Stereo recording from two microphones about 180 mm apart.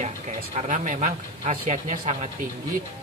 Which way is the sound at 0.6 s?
45° right (ahead or behind).